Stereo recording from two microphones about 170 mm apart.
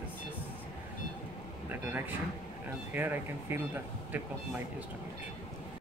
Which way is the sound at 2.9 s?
10° right (ahead or behind).